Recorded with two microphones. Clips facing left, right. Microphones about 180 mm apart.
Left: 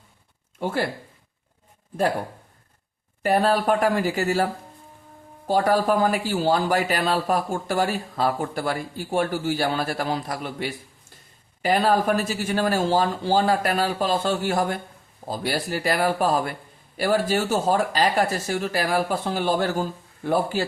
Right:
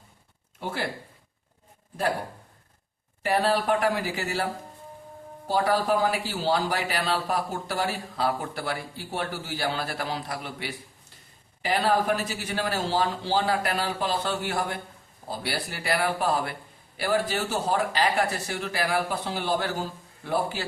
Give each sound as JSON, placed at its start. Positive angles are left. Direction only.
{"t": 0.6, "sound": "speech", "side_deg": 50}
{"t": 3.3, "sound": "speech", "side_deg": 50}
{"t": 5.5, "sound": "speech", "side_deg": 45}